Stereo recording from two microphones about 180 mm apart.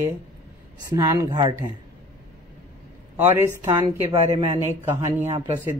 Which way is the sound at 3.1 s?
10° right (ahead or behind).